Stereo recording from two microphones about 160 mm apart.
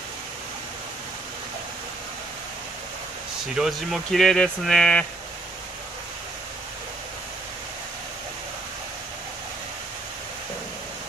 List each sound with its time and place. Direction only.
3.5 s speech: centre (ahead or behind)